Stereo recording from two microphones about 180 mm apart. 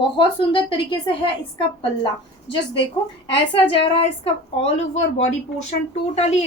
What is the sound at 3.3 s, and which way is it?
A woman's voice, 30° left (ahead or behind).